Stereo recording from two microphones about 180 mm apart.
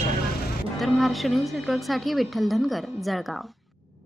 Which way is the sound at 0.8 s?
Centre (ahead or behind).